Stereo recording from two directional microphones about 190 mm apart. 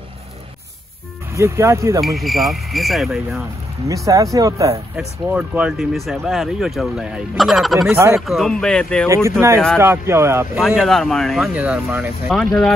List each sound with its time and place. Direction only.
1.3 s speech: 15° right (ahead or behind)
2.0 s speech: centre (ahead or behind)
3.9 s speech: 15° right (ahead or behind); by 9.1 s 5° left (ahead or behind)
9.8 s speech: 15° right (ahead or behind)
10.6 s speech: centre (ahead or behind)
12.3 s speech: centre (ahead or behind)